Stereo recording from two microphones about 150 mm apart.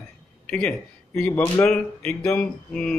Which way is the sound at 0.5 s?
5° left (ahead or behind).